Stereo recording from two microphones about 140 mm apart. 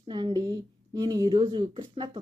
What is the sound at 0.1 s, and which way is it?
A woman's voice, 35° right (ahead or behind).